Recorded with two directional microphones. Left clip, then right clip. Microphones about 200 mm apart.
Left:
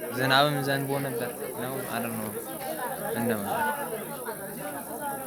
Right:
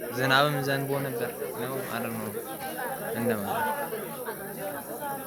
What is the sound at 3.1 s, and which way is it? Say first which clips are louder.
Speech: right 1 dB; 5° left (ahead or behind).